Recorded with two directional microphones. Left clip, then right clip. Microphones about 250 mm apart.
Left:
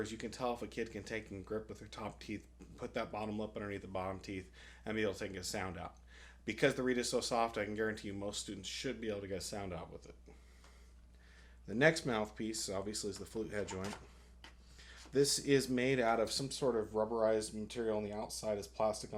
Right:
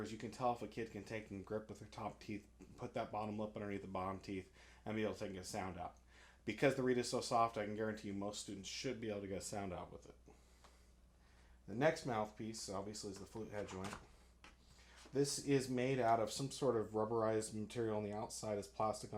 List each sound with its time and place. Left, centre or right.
0.0 s speech: right
1.5 s speech: right
1.9 s speech: right
11.8 s speech: centre
15.1 s speech: centre; by 18.9 s right